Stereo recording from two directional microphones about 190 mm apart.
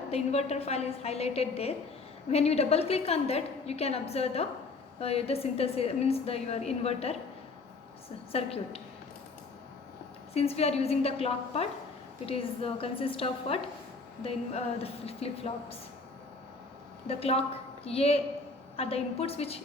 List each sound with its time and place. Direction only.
0.1 s a woman's voice: 35° left (ahead or behind)
8.3 s a woman's voice: 30° left (ahead or behind)
10.3 s a woman's voice: 30° left (ahead or behind)
15.0 s a woman's voice: 30° left (ahead or behind)
17.1 s a woman's voice: 30° left (ahead or behind)